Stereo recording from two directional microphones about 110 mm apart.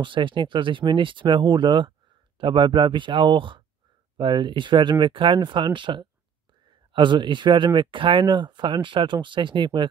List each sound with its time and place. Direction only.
0.0 s speech: 50° right (ahead or behind)